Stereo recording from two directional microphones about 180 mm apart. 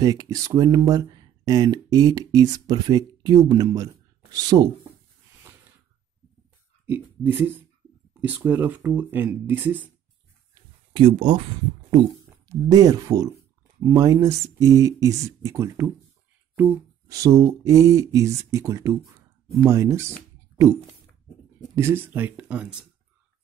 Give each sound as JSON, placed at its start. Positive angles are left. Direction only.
{"t": 0.0, "sound": "speech", "side_deg": -20}
{"t": 6.9, "sound": "mantra", "side_deg": -10}
{"t": 10.5, "sound": "a sound", "side_deg": -30}
{"t": 12.4, "sound": "speech", "side_deg": -20}
{"t": 15.4, "sound": "mantra", "side_deg": -15}
{"t": 18.5, "sound": "speech", "side_deg": -15}
{"t": 21.7, "sound": "mantra", "side_deg": -15}